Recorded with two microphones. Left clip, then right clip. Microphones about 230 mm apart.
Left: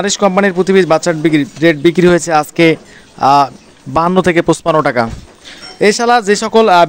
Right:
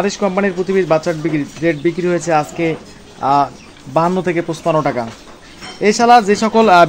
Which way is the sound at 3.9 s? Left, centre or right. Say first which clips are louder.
Left 4 dB; left.